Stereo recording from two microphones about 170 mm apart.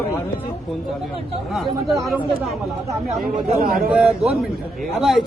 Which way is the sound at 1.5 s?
Centre (ahead or behind).